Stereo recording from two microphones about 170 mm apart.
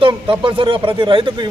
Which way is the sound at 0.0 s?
30° right (ahead or behind).